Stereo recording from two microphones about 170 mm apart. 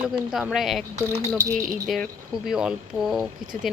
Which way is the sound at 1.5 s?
45° right (ahead or behind).